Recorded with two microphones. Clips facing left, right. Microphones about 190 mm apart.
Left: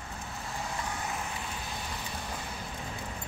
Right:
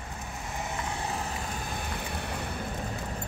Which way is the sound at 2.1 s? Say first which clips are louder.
Right 4 dB; 65° right (ahead or behind).